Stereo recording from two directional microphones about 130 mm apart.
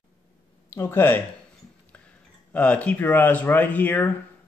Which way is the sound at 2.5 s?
10° left (ahead or behind).